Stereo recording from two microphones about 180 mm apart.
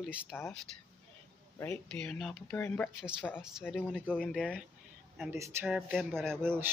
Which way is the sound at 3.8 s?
5° left (ahead or behind).